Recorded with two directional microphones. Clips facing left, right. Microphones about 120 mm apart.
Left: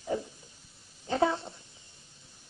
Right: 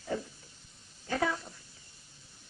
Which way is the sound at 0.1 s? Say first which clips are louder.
Left 2 dB; 15° left (ahead or behind).